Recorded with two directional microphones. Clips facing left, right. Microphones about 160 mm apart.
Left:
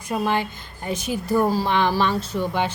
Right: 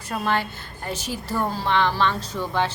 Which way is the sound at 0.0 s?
15° left (ahead or behind).